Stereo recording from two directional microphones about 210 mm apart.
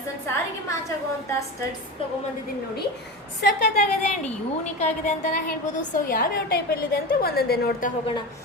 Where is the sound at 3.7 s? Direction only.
35° left (ahead or behind).